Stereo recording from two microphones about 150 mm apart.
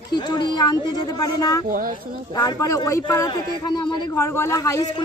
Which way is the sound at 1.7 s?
65° right (ahead or behind).